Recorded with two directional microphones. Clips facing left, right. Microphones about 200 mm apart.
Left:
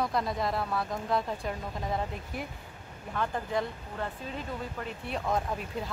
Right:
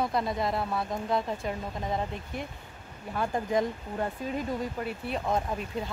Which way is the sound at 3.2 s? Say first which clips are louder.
Right 4 dB; 15° right (ahead or behind).